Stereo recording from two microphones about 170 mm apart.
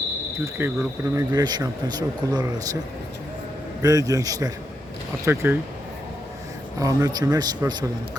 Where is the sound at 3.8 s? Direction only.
20° right (ahead or behind).